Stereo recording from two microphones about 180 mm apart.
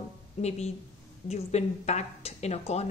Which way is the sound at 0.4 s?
35° left (ahead or behind).